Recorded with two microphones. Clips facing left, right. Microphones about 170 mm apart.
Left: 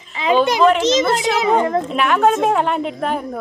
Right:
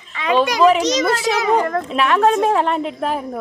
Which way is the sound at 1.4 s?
25° left (ahead or behind).